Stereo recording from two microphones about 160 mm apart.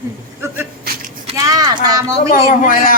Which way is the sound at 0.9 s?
70° right (ahead or behind).